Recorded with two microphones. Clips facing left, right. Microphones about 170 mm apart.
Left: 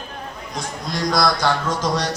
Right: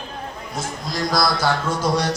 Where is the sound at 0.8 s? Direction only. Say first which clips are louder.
Left 2 dB; centre (ahead or behind).